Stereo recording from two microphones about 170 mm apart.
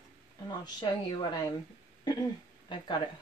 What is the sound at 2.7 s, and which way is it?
Speech, 25° left (ahead or behind).